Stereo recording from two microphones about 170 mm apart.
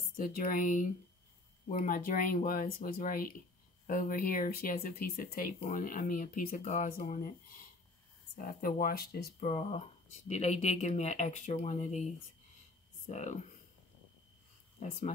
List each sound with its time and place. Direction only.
0.1 s speech: 55° left (ahead or behind)
9.5 s speech: 40° left (ahead or behind)
13.0 s speech: 45° left (ahead or behind)
14.8 s speech: 40° left (ahead or behind)